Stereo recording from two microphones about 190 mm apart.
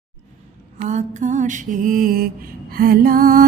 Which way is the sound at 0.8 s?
35° right (ahead or behind).